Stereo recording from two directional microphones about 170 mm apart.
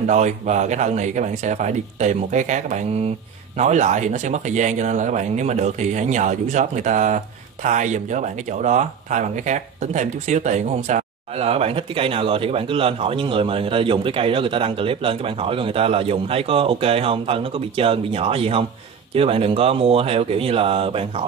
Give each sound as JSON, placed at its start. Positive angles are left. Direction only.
{"t": 0.0, "sound": "speech", "side_deg": -45}